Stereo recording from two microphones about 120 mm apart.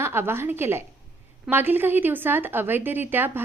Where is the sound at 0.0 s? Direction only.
20° right (ahead or behind).